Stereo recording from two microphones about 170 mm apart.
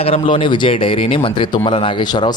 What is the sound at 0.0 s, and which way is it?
A man's voice, 35° left (ahead or behind).